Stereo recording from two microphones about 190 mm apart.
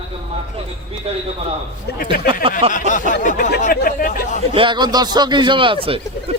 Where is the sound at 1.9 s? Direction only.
60° left (ahead or behind).